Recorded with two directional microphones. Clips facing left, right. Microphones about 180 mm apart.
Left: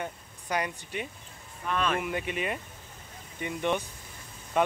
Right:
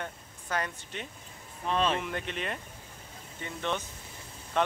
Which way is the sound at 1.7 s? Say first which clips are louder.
Right 1 dB; 30° right (ahead or behind).